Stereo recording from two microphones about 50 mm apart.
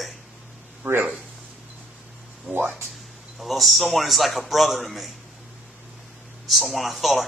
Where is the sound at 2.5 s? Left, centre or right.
Right.